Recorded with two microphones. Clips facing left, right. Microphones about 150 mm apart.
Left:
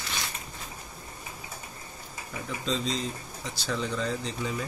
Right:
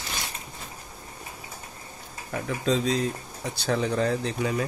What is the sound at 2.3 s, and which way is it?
Speech, 60° right (ahead or behind).